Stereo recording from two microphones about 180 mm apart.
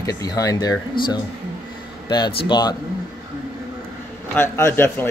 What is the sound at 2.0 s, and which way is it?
Speech, 25° left (ahead or behind).